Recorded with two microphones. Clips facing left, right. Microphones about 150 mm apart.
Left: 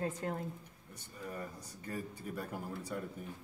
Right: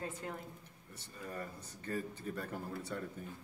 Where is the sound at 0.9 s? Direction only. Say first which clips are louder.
Left 1 dB; 10° left (ahead or behind).